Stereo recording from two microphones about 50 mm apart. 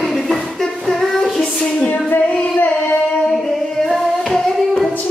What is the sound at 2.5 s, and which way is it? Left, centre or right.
Child singing, left.